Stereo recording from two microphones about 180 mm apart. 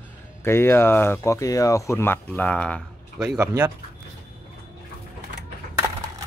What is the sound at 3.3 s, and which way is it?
Speech, 15° right (ahead or behind).